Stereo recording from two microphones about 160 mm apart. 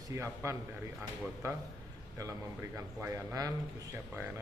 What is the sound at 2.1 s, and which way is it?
A man's voice, 20° right (ahead or behind).